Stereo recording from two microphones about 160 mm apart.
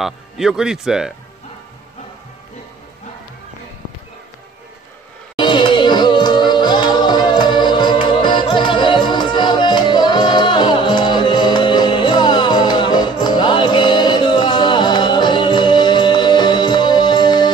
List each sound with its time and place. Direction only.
0.0 s speech: 5° right (ahead or behind)
5.4 s music: 30° left (ahead or behind)